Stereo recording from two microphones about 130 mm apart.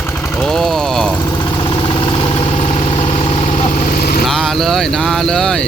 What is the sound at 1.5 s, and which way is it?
Vehicle, 35° left (ahead or behind).